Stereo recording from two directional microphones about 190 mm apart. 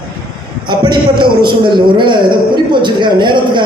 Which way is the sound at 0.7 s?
25° right (ahead or behind).